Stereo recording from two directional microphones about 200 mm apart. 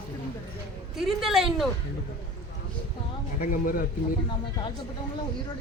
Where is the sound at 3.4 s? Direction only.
45° left (ahead or behind).